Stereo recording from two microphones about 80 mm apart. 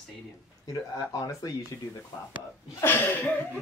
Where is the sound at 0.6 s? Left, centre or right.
Left.